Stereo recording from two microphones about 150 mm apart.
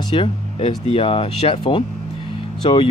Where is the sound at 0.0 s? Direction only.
35° left (ahead or behind).